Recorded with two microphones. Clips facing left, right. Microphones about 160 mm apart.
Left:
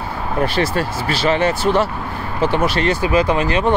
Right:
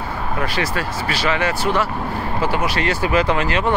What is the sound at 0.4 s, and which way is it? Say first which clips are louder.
Speech: left 6 dB; 30° left (ahead or behind).